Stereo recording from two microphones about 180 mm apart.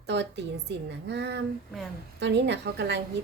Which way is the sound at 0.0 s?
75° right (ahead or behind).